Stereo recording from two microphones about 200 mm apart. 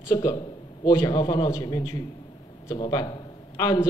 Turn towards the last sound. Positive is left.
turn(degrees=20)  # may be behind; listen again after turning